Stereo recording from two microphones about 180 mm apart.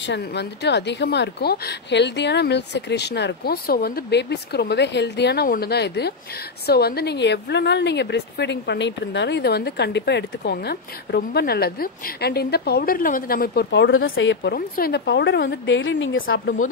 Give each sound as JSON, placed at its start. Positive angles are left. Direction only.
{"t": 0.0, "sound": "a woman's voice", "side_deg": 75}